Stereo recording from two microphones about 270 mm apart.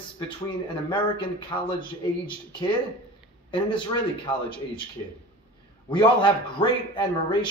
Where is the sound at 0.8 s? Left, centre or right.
Centre.